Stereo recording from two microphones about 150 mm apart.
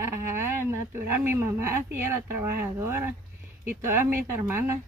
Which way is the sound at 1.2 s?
15° right (ahead or behind).